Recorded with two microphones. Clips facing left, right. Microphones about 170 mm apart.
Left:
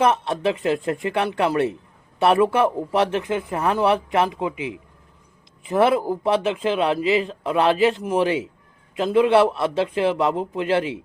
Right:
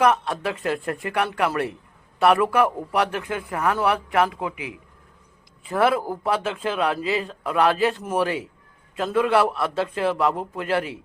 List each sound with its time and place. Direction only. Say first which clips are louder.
0.0 s a man's voice: left 1 dB; 25° left (ahead or behind)